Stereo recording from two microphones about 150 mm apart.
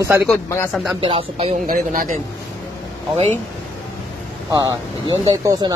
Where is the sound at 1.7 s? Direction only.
65° right (ahead or behind).